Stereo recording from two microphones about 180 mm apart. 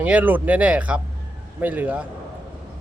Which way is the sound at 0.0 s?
10° right (ahead or behind).